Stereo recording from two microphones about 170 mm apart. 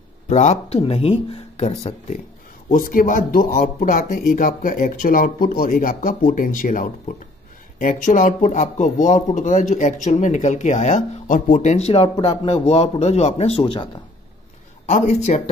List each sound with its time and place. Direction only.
0.3 s speech: 45° left (ahead or behind)
2.7 s speech: 55° left (ahead or behind); by 14.0 s 30° left (ahead or behind)
14.9 s speech: 45° left (ahead or behind)